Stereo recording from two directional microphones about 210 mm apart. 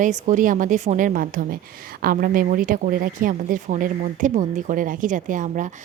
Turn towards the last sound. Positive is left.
turn(degrees=-40)  # may be behind; listen again after turning